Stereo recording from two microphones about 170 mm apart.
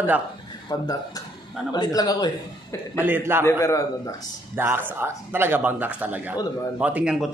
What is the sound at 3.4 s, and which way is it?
Speech, 20° left (ahead or behind).